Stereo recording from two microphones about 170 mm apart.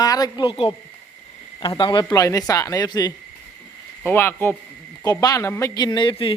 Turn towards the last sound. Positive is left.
turn(degrees=30)  # may be behind; listen again after turning